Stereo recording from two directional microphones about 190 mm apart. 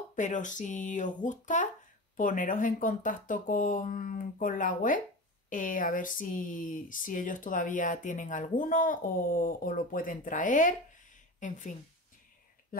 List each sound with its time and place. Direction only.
0.1 s speech: 40° left (ahead or behind)